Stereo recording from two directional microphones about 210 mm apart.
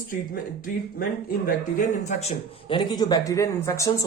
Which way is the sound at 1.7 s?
35° left (ahead or behind).